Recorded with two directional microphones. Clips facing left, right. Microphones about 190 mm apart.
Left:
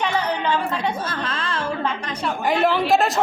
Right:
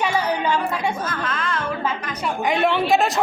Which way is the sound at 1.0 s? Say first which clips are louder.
Right 1 dB; 30° left (ahead or behind).